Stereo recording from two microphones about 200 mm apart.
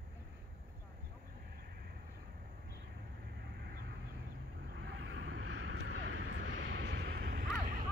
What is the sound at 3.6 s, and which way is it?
Vehicle, 55° right (ahead or behind).